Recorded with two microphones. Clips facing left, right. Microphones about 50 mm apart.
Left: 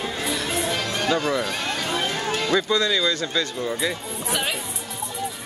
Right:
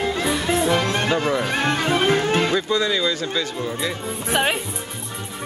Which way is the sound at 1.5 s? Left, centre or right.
Right.